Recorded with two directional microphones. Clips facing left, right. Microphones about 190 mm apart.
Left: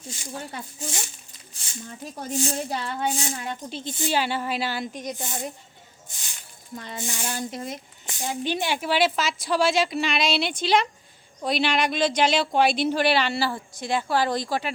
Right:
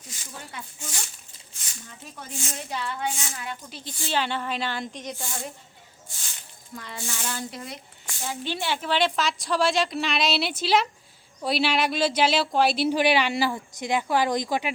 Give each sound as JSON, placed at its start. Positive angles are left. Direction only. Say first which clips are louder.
{"t": 0.0, "sound": "speech", "louder": "left 7 dB", "side_deg": 30}
{"t": 4.1, "sound": "a woman's voice", "louder": "left 1 dB", "side_deg": 10}
{"t": 5.1, "sound": "speech", "louder": "left 3 dB", "side_deg": 20}
{"t": 6.7, "sound": "a woman's voice", "louder": "left 3 dB", "side_deg": 20}